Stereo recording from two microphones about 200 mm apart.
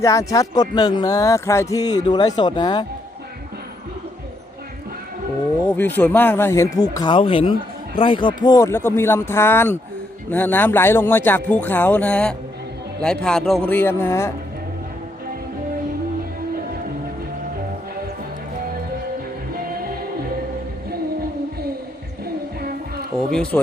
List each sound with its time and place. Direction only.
0.0 s speech: 15° left (ahead or behind)
5.6 s speech: 10° left (ahead or behind)
23.3 s speech: 5° left (ahead or behind)